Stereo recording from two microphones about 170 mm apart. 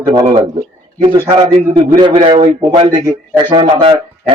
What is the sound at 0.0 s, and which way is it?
A man's voice, 20° right (ahead or behind).